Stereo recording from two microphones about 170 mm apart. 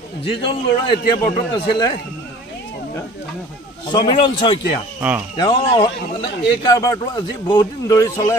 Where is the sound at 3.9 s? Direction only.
30° left (ahead or behind).